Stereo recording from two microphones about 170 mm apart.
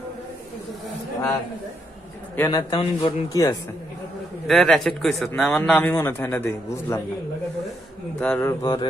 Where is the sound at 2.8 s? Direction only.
35° left (ahead or behind).